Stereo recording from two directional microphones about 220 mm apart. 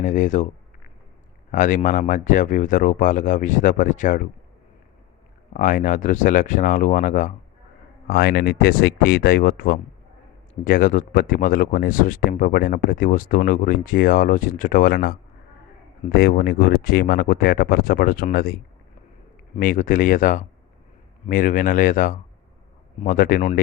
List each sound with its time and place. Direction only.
0.0 s speech: 35° left (ahead or behind)
1.5 s speech: 35° left (ahead or behind)
5.5 s speech: 35° left (ahead or behind)
8.0 s speech: 45° left (ahead or behind)